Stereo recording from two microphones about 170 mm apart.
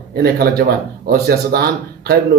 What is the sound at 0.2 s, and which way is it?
A man's voice, 65° right (ahead or behind).